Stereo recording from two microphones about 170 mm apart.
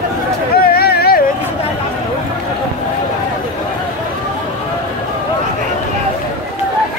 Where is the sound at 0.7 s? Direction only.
65° left (ahead or behind).